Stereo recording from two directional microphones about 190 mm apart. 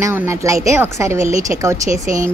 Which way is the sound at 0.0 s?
15° right (ahead or behind).